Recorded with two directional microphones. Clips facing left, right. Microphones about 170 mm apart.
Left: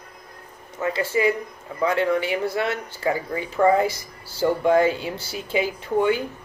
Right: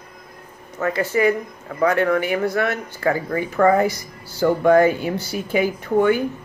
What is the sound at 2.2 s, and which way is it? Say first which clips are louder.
Speech: right 3 dB; 25° left (ahead or behind).